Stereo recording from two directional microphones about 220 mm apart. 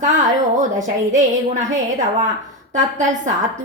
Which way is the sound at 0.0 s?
35° right (ahead or behind).